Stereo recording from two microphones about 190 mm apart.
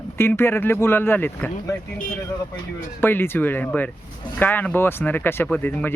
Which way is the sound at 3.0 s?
10° left (ahead or behind).